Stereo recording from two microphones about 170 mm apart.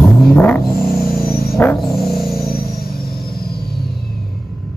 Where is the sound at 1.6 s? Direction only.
Centre (ahead or behind).